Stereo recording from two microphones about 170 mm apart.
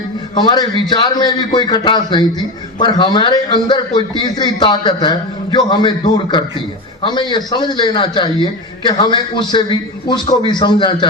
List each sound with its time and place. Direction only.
0.3 s a man's voice: 25° left (ahead or behind)